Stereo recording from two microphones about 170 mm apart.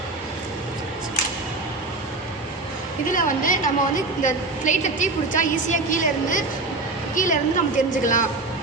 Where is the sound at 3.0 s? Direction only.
50° left (ahead or behind).